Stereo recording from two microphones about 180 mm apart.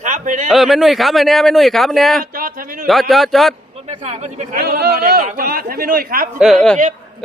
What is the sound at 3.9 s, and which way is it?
Speech, 40° right (ahead or behind).